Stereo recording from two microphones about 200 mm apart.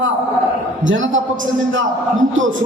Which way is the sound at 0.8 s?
70° right (ahead or behind).